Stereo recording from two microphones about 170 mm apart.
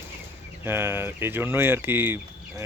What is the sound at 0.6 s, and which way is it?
Speech, 15° right (ahead or behind).